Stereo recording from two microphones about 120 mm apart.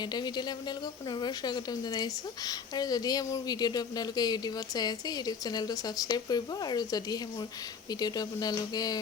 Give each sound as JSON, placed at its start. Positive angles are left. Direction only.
{"t": 0.0, "sound": "a woman's voice", "side_deg": 35}